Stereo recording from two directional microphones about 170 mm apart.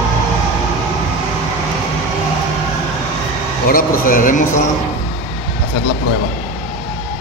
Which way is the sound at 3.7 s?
55° left (ahead or behind).